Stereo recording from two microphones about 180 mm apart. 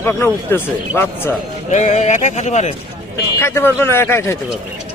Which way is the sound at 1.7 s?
40° left (ahead or behind).